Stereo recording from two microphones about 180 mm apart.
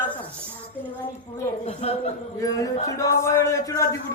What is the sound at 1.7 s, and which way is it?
Speech, 35° left (ahead or behind).